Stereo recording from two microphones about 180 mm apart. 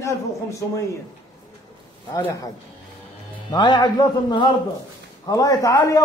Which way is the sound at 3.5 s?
25° left (ahead or behind).